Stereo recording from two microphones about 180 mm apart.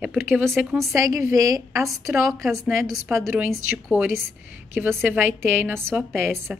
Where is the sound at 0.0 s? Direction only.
10° right (ahead or behind).